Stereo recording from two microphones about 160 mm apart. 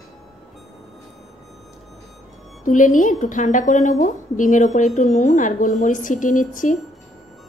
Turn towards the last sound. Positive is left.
turn(degrees=55)  # may be behind; listen again after turning